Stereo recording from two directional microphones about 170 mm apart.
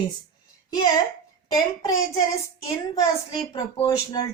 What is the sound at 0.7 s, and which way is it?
Speech, 20° left (ahead or behind).